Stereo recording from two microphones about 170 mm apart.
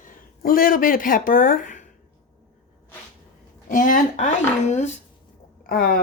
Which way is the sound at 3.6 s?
50° left (ahead or behind).